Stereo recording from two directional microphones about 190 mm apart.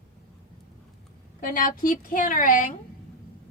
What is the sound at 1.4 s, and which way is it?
A woman's voice, 45° left (ahead or behind).